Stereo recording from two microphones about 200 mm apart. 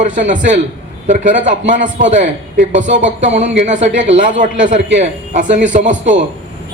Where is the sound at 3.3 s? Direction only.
35° right (ahead or behind).